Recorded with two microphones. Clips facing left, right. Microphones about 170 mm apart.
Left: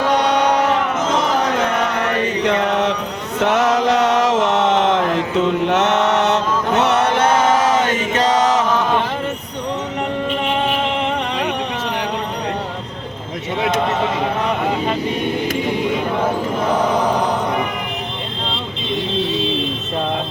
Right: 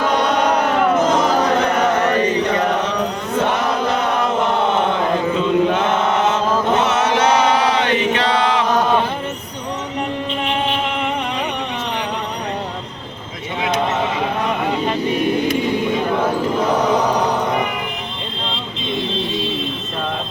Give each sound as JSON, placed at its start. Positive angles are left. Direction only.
{"t": 3.4, "sound": "chant", "side_deg": 90}